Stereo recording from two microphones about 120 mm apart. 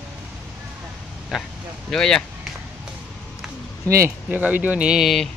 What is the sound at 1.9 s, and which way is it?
Speech, 5° left (ahead or behind).